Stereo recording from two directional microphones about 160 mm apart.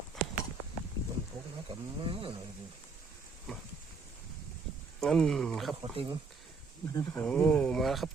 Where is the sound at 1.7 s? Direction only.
30° right (ahead or behind).